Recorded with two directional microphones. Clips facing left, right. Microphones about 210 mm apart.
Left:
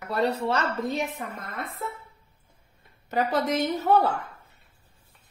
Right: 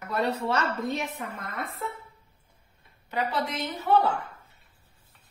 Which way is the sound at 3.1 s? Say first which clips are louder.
Left 5 dB; 45° left (ahead or behind).